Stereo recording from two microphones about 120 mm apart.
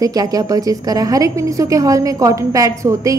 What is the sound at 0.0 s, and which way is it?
A woman's voice, 30° right (ahead or behind).